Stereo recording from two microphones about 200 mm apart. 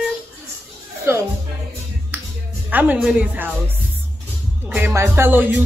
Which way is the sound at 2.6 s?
10° right (ahead or behind).